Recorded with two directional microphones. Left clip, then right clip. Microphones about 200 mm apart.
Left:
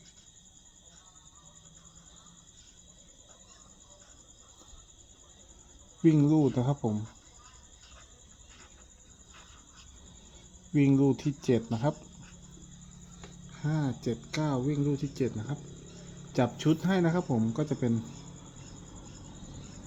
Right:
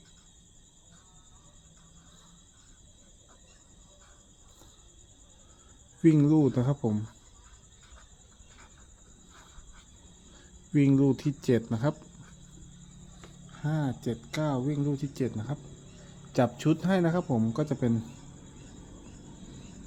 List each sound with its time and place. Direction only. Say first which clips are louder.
6.0 s speech: right 2 dB; 20° right (ahead or behind)
10.8 s speech: right 1 dB; 20° right (ahead or behind)
13.5 s speech: right 1 dB; 10° right (ahead or behind)